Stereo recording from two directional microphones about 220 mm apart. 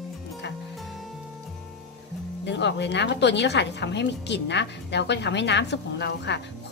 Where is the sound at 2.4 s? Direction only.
50° left (ahead or behind).